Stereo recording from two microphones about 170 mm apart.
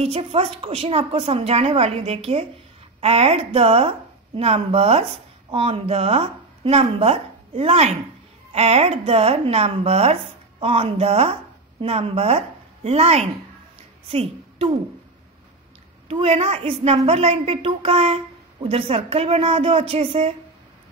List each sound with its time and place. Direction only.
0.0 s a woman's voice: 35° right (ahead or behind)
16.1 s a woman's voice: 35° right (ahead or behind)